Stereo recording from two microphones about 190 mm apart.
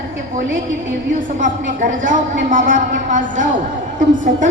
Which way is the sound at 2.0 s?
45° right (ahead or behind).